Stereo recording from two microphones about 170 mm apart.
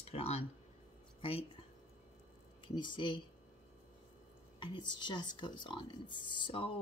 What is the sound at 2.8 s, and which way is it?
Speech, 30° left (ahead or behind).